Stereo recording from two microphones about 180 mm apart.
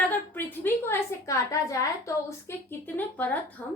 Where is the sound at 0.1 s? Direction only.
10° left (ahead or behind).